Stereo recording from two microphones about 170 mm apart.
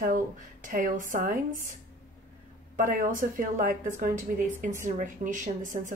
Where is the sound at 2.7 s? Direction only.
55° right (ahead or behind).